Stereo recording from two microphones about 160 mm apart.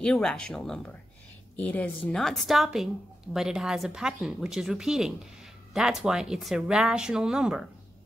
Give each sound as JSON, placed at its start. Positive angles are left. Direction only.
{"t": 0.0, "sound": "speech", "side_deg": 5}